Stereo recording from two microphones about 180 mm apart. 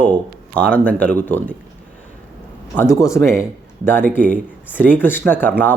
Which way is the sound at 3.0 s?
15° left (ahead or behind).